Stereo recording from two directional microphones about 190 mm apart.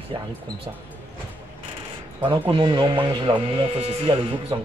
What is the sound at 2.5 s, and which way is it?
Speech, 25° right (ahead or behind).